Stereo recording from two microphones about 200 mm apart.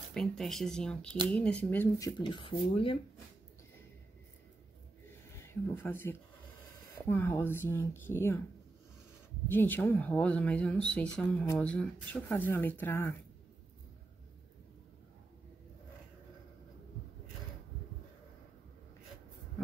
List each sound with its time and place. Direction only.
0.1 s speech: centre (ahead or behind); by 3.0 s 25° left (ahead or behind)
5.4 s speech: 10° left (ahead or behind)
9.5 s speech: 10° left (ahead or behind)